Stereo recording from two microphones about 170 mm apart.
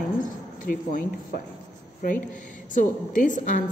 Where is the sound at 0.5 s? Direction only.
50° left (ahead or behind).